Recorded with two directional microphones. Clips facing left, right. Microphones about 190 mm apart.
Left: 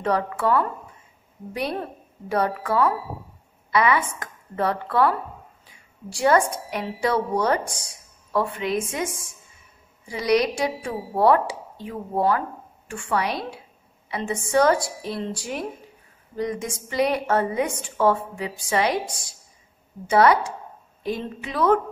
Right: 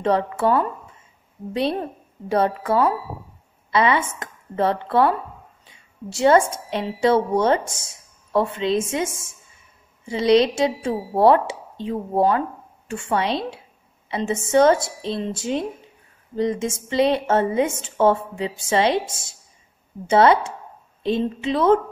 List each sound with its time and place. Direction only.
0.0 s a woman's voice: 25° right (ahead or behind)